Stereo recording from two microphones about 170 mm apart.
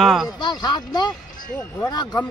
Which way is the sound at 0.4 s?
25° left (ahead or behind).